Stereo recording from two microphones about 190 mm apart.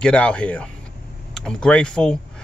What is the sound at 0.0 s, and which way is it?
Speech, 5° left (ahead or behind).